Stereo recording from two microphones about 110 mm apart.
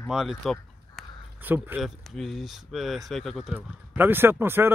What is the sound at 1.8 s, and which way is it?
Speech, centre (ahead or behind).